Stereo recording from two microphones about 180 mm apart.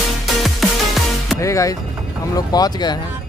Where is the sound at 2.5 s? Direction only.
20° left (ahead or behind).